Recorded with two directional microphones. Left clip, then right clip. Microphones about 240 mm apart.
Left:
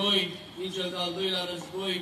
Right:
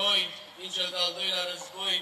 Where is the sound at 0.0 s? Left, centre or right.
Right.